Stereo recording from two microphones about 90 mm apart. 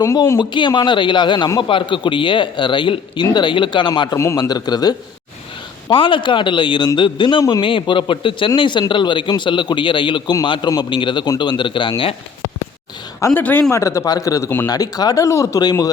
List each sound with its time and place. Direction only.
0.0 s speech: 40° left (ahead or behind)
0.3 s a man's voice: 60° left (ahead or behind)
5.9 s speech: 70° left (ahead or behind); by 7.6 s 55° left (ahead or behind)
7.6 s a man's voice: 75° left (ahead or behind)
13.3 s a man's voice: 20° left (ahead or behind)
13.7 s speech: 35° left (ahead or behind)